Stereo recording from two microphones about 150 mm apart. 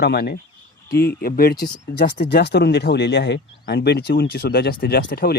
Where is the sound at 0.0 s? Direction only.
90° left.